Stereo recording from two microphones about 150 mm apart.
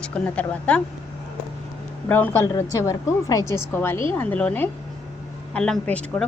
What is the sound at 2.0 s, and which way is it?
A woman's voice, 10° left (ahead or behind).